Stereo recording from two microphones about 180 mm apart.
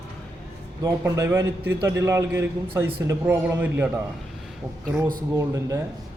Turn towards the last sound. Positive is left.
turn(degrees=-15)  # may be behind; listen again after turning